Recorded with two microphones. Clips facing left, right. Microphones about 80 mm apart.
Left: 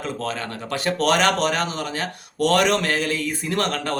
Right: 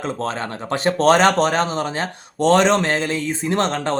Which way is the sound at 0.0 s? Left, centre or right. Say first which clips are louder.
Right 3 dB; right.